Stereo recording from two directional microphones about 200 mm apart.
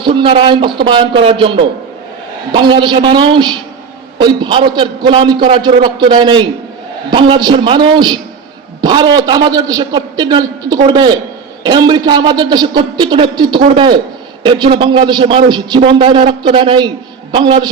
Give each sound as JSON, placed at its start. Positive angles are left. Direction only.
{"t": 0.0, "sound": "a man's voice", "side_deg": -25}